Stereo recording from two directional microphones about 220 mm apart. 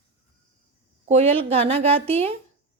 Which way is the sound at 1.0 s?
25° right (ahead or behind).